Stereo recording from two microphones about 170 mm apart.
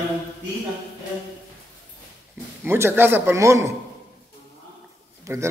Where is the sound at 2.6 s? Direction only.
15° right (ahead or behind).